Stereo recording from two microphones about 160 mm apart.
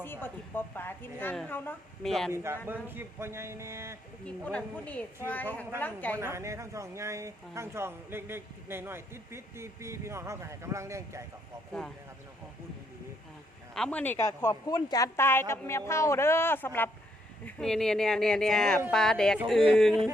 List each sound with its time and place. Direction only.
0.0 s a woman's voice: 15° left (ahead or behind)
2.3 s speech: 15° right (ahead or behind)
4.3 s a woman's voice: 5° left (ahead or behind)
6.1 s speech: 15° right (ahead or behind)
13.7 s a woman's voice: 5° left (ahead or behind)